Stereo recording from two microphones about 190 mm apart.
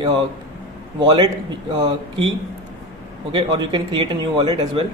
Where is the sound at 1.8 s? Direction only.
30° right (ahead or behind).